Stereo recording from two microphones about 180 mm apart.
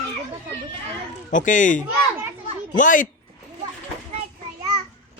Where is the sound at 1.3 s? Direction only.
45° left (ahead or behind).